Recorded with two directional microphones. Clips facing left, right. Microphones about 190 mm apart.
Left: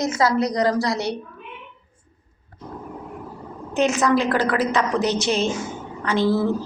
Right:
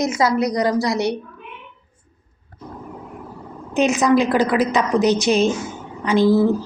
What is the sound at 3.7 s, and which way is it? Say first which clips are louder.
A woman's voice: right 3 dB; 15° right (ahead or behind).